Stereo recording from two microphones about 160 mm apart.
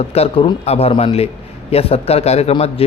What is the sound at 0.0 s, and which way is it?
A man's voice, 40° left (ahead or behind).